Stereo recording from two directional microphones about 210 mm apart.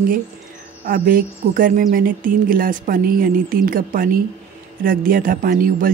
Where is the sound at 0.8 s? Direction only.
40° right (ahead or behind).